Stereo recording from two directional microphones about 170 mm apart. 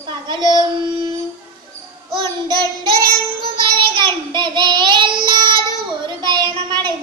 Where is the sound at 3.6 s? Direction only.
30° right (ahead or behind).